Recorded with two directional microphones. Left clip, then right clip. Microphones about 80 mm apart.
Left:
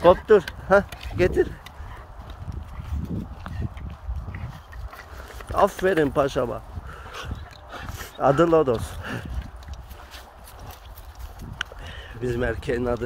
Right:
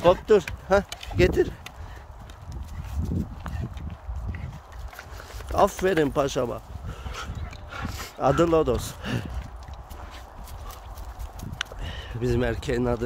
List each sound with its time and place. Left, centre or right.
0.0 s speech: centre
1.1 s speech: right
5.5 s speech: right
8.0 s speech: right
8.7 s speech: right
11.5 s a sound: right
12.3 s speech: right